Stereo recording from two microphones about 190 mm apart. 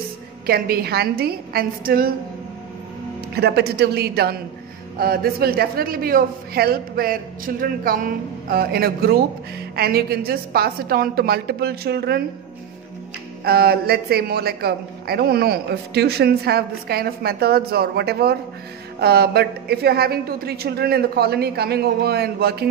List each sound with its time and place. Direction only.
0.5 s a man's voice: 50° right (ahead or behind)
3.3 s a man's voice: 60° right (ahead or behind)
13.4 s a man's voice: 55° right (ahead or behind)